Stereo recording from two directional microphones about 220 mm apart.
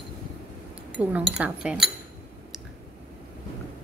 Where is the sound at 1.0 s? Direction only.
5° right (ahead or behind).